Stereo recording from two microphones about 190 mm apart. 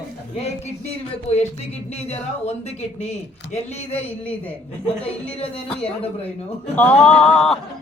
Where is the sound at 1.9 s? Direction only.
35° left (ahead or behind).